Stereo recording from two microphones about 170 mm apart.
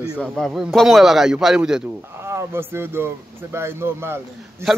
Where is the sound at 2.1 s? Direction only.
15° right (ahead or behind).